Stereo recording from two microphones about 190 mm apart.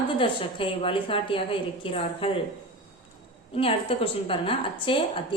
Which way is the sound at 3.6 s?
30° left (ahead or behind).